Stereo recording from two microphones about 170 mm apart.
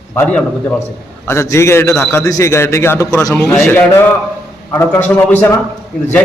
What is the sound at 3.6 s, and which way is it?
A man's voice, 15° left (ahead or behind).